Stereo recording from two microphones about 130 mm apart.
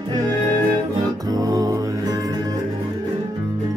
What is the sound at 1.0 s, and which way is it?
Music, 30° right (ahead or behind).